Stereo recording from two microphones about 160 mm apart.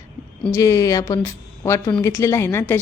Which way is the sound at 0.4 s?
20° left (ahead or behind).